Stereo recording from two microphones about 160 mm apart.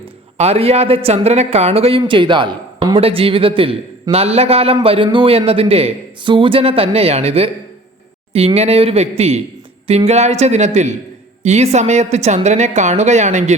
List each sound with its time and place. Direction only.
0.3 s a woman's voice: 40° right (ahead or behind)